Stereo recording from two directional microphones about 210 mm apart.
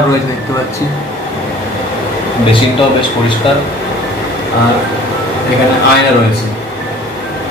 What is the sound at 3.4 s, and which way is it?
Speech, 25° left (ahead or behind).